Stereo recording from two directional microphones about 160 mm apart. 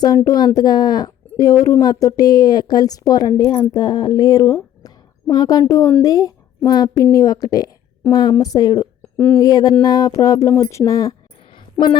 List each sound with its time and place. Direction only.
0.0 s speech: 25° left (ahead or behind)
9.1 s speech: 10° left (ahead or behind)
9.4 s speech: 25° left (ahead or behind)
11.5 s a sound: 30° left (ahead or behind)